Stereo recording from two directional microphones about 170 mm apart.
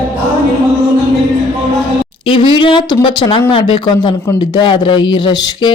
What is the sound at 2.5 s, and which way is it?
Speech, 30° left (ahead or behind).